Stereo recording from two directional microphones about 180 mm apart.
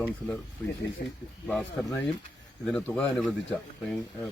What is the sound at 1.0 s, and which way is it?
Speech, 60° left (ahead or behind).